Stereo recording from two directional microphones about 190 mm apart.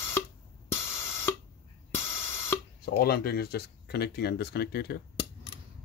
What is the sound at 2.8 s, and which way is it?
Speech, 55° left (ahead or behind).